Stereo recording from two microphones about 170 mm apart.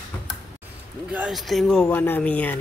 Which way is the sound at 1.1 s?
5° right (ahead or behind).